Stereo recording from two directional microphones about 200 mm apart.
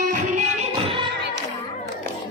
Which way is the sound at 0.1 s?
40° right (ahead or behind).